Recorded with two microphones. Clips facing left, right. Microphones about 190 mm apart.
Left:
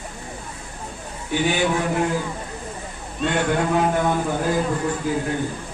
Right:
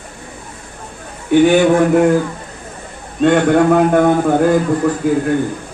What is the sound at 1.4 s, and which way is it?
Speech, 55° right (ahead or behind).